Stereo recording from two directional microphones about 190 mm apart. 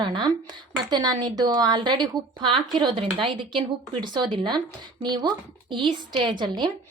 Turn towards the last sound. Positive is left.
turn(degrees=-25)  # may be behind; listen again after turning